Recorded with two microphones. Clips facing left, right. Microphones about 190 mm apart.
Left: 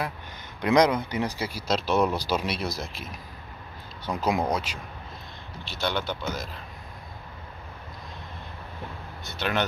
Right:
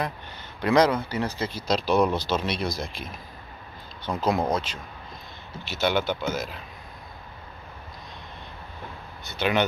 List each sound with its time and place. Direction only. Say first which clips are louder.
0.6 s speech: even; 15° left (ahead or behind)
5.7 s speech: right 5 dB; 5° right (ahead or behind)
9.2 s speech: right 4 dB; centre (ahead or behind)